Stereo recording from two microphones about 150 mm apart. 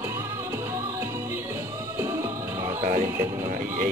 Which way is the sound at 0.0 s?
20° right (ahead or behind).